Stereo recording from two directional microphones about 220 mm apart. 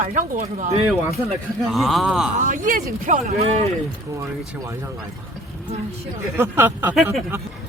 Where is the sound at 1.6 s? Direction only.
Centre (ahead or behind).